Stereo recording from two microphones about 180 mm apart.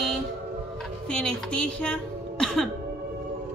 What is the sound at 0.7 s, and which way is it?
Music, 5° left (ahead or behind).